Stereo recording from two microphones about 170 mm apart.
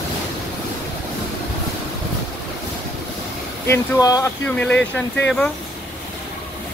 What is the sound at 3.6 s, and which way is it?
Speech, 20° left (ahead or behind).